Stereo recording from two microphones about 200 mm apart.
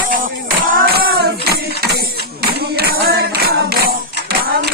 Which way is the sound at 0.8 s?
50° right (ahead or behind).